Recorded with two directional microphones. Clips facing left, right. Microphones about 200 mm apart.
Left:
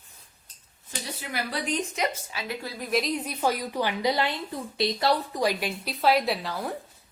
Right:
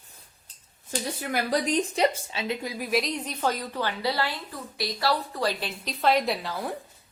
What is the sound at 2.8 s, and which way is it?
A woman's voice, centre (ahead or behind).